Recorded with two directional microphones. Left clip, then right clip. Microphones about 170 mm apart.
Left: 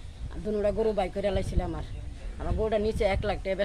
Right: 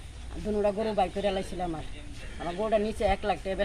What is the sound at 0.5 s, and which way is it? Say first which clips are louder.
Speech: left 1 dB; 30° left (ahead or behind).